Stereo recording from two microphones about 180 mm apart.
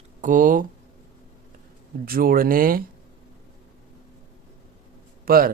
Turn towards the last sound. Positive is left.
turn(degrees=-55)  # may be behind; listen again after turning